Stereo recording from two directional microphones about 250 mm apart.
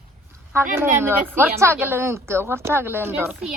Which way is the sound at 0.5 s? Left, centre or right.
Centre.